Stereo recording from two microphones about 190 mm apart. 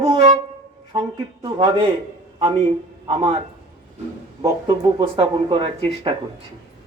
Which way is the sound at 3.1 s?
30° right (ahead or behind).